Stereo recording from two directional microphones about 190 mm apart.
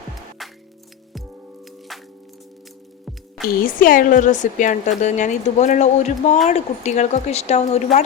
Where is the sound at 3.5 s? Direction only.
45° left (ahead or behind).